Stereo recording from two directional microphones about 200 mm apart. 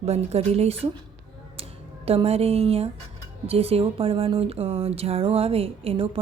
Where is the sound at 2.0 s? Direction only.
30° right (ahead or behind).